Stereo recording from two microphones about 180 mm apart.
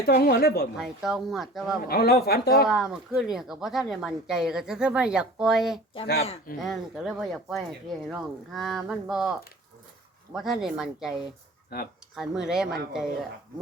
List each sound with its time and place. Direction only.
0.2 s speech: 60° left (ahead or behind)
0.8 s speech: centre (ahead or behind)
1.9 s speech: 60° left (ahead or behind)
2.6 s speech: centre (ahead or behind)
11.7 s speech: 55° left (ahead or behind)
12.1 s speech: 5° right (ahead or behind)